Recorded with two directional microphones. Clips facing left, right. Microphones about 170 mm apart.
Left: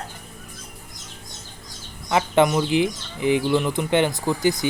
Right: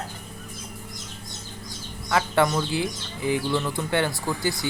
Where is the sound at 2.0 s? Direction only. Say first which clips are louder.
Left 3 dB; 20° left (ahead or behind).